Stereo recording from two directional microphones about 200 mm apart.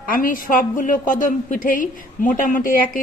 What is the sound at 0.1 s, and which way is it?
A woman's voice, 45° left (ahead or behind).